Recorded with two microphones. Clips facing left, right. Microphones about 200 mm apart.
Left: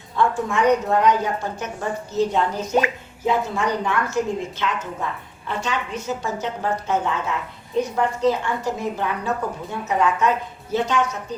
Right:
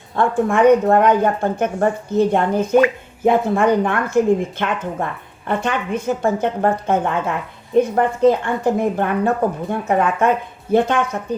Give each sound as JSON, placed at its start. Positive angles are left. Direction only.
{"t": 0.2, "sound": "a woman's voice", "side_deg": -55}